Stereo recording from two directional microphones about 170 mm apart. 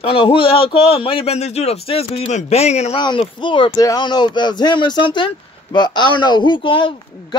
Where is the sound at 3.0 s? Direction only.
25° left (ahead or behind).